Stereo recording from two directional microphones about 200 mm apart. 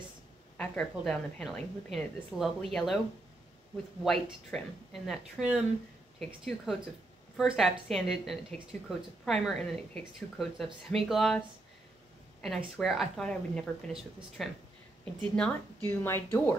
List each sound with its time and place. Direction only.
0.6 s a woman's voice: 5° left (ahead or behind)
4.0 s a woman's voice: centre (ahead or behind)